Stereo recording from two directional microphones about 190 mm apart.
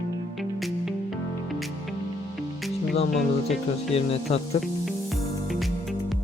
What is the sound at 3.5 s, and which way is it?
Speech, 35° left (ahead or behind).